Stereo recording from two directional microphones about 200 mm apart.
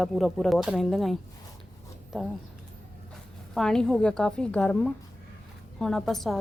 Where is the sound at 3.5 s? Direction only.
5° left (ahead or behind).